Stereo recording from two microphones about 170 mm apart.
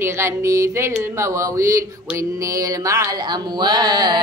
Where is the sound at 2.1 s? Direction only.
20° right (ahead or behind).